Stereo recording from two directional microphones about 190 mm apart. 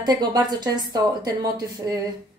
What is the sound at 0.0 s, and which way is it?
A woman's voice, 20° right (ahead or behind).